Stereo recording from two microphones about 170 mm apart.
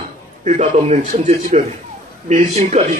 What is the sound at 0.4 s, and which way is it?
A man's voice, 45° right (ahead or behind).